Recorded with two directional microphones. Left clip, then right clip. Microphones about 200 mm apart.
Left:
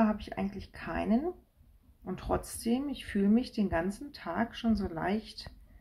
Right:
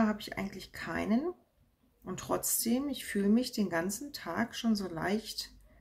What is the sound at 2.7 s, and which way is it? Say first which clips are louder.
Speech: left 3 dB; 25° right (ahead or behind).